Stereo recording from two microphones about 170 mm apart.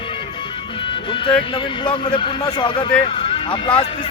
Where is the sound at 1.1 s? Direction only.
30° left (ahead or behind).